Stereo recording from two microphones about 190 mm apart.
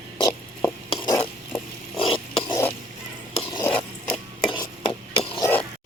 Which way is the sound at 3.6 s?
5° left (ahead or behind).